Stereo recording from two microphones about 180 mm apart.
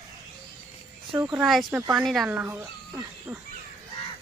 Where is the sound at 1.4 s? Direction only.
Centre (ahead or behind).